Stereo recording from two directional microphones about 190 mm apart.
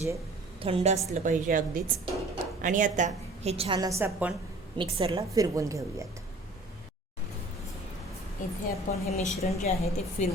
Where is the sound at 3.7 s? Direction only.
15° right (ahead or behind).